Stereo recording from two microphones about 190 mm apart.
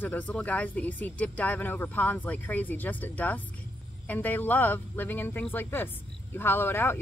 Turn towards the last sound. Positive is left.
turn(degrees=10)  # may be behind; listen again after turning